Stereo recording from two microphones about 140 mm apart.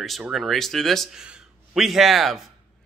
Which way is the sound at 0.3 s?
Centre (ahead or behind).